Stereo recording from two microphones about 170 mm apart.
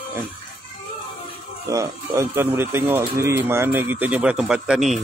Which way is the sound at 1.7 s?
20° right (ahead or behind).